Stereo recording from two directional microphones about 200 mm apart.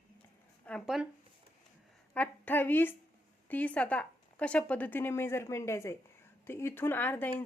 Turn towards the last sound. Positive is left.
turn(degrees=10)  # may be behind; listen again after turning